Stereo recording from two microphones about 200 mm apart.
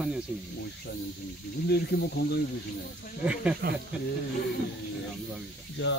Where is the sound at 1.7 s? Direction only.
55° left (ahead or behind).